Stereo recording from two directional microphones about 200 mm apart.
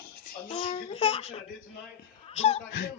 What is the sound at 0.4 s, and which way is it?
Child singing, 30° left (ahead or behind).